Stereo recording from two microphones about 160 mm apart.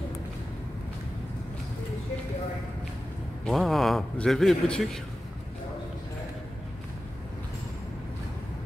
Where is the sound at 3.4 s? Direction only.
Centre (ahead or behind).